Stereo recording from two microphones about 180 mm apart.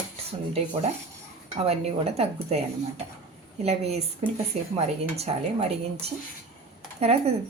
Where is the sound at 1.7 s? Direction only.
35° right (ahead or behind).